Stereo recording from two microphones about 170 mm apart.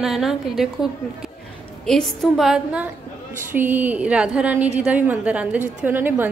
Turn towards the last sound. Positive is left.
turn(degrees=-10)  # may be behind; listen again after turning